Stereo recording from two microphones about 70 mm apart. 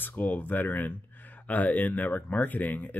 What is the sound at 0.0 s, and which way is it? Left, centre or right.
Speech, left.